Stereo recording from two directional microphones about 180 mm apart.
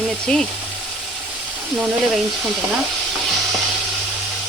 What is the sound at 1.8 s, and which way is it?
Speech, centre (ahead or behind).